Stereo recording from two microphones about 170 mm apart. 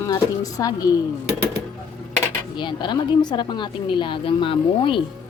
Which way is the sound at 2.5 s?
25° left (ahead or behind).